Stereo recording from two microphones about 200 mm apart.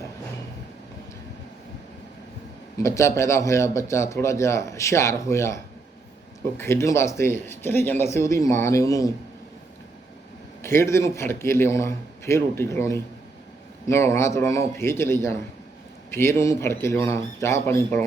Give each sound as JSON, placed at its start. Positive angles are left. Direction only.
{"t": 2.7, "sound": "a man's voice", "side_deg": 15}
{"t": 6.6, "sound": "a man's voice", "side_deg": 15}
{"t": 10.6, "sound": "a man's voice", "side_deg": 10}